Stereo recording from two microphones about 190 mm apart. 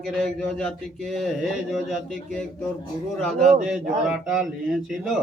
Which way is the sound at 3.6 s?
5° right (ahead or behind).